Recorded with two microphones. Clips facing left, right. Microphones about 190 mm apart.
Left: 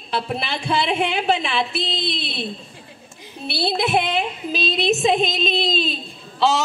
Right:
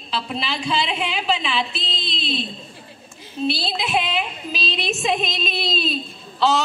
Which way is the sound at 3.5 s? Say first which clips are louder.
Left 4 dB; 55° left (ahead or behind).